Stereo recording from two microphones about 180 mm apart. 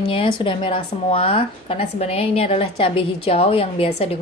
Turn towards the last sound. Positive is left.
turn(degrees=35)  # may be behind; listen again after turning